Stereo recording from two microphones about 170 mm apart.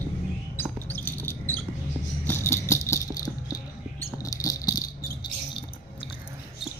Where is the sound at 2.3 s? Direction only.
15° left (ahead or behind).